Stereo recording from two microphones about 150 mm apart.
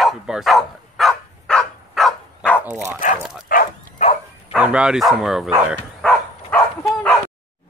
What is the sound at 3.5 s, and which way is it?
Bow-wow, 70° left (ahead or behind).